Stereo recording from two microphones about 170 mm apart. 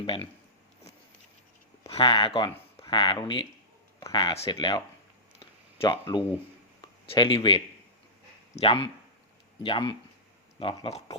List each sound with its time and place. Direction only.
0.0 s speech: 30° left (ahead or behind)
1.9 s speech: 30° left (ahead or behind)
5.8 s speech: 25° left (ahead or behind)